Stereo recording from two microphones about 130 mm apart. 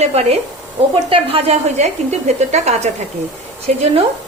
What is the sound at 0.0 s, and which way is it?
A woman's voice, 55° right (ahead or behind).